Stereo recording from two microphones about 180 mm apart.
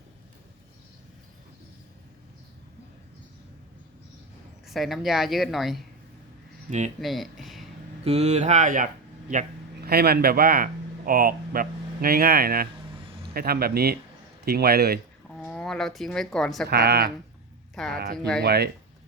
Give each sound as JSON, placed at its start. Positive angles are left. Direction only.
{"t": 4.6, "sound": "speech", "side_deg": 0}
{"t": 6.7, "sound": "speech", "side_deg": -40}
{"t": 7.0, "sound": "speech", "side_deg": 0}
{"t": 8.0, "sound": "speech", "side_deg": -35}
{"t": 9.8, "sound": "speech", "side_deg": -60}
{"t": 15.4, "sound": "speech", "side_deg": 5}
{"t": 16.6, "sound": "speech", "side_deg": -65}